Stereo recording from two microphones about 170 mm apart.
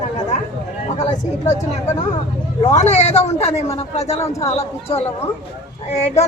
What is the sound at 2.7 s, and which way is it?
Speech, 40° left (ahead or behind).